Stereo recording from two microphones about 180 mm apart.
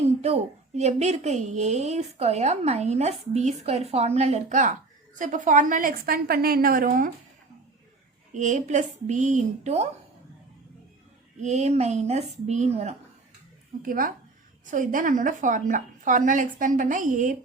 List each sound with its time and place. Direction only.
0.2 s a woman's voice: 35° right (ahead or behind)
8.3 s a woman's voice: 45° right (ahead or behind)
11.3 s a woman's voice: 40° right (ahead or behind)
13.8 s a woman's voice: 50° right (ahead or behind)